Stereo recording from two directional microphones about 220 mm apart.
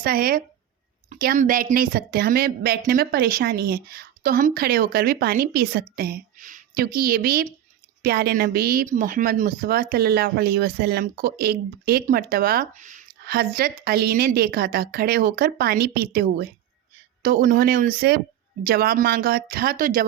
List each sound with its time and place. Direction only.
0.0 s a woman's voice: 40° right (ahead or behind)